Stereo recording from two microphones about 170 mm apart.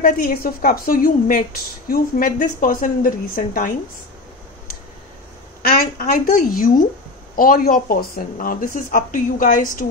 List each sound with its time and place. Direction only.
0.0 s a woman's voice: 60° left (ahead or behind)
5.7 s a woman's voice: 60° left (ahead or behind)